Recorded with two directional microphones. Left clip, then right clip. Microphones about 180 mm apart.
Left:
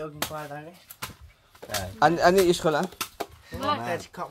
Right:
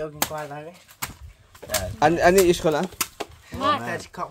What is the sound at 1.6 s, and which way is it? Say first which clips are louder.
Speech: right 5 dB; 30° left (ahead or behind).